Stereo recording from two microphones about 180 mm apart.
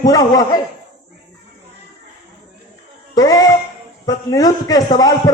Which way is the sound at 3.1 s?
20° left (ahead or behind).